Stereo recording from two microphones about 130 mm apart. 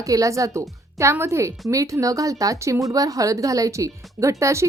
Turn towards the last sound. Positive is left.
turn(degrees=-20)  # may be behind; listen again after turning